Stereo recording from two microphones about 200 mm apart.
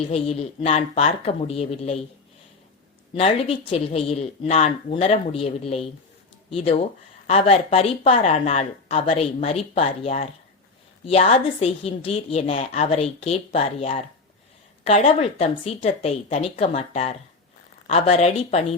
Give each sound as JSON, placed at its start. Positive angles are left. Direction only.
{"t": 0.0, "sound": "a woman's voice", "side_deg": 30}
{"t": 3.2, "sound": "a woman's voice", "side_deg": 30}